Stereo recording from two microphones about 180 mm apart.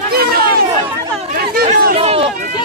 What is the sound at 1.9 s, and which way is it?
Run, 35° right (ahead or behind).